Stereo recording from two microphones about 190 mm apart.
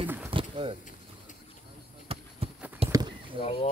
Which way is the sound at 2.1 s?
30° right (ahead or behind).